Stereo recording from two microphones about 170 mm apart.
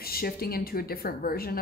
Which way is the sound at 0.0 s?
65° left (ahead or behind).